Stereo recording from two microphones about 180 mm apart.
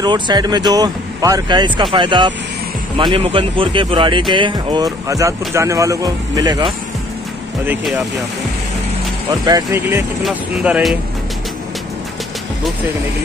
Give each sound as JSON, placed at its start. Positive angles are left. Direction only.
{"t": 0.0, "sound": "speech", "side_deg": -25}
{"t": 9.3, "sound": "speech", "side_deg": -20}
{"t": 10.2, "sound": "speech", "side_deg": -5}